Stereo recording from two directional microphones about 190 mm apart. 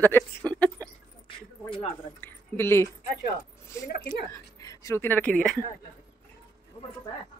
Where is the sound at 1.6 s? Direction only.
25° left (ahead or behind).